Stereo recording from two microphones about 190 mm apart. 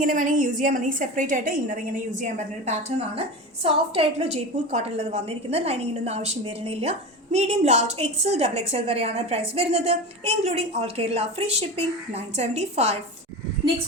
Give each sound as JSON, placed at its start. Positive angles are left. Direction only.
{"t": 0.0, "sound": "a woman's voice", "side_deg": -45}